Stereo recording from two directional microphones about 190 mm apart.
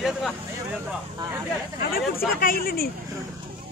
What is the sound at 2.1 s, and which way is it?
Speech, 50° left (ahead or behind).